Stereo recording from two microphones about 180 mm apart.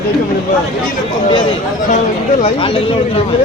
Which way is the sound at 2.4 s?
30° left (ahead or behind).